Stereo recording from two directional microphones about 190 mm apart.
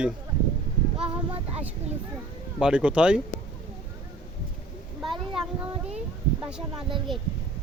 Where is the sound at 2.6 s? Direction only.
5° right (ahead or behind).